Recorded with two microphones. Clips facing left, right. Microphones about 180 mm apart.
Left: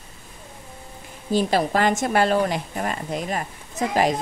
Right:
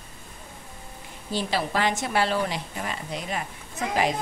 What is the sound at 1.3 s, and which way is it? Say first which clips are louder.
Speech: left 6 dB; 45° left (ahead or behind).